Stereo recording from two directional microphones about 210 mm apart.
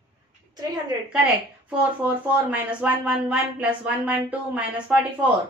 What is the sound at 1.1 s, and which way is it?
Speech, 5° right (ahead or behind).